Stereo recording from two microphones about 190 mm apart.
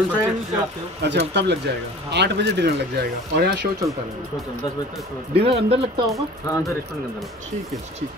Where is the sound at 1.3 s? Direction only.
65° right (ahead or behind).